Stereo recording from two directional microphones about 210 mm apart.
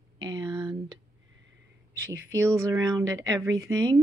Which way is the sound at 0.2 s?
20° right (ahead or behind).